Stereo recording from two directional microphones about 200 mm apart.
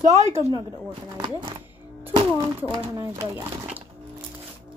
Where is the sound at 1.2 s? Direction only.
25° right (ahead or behind).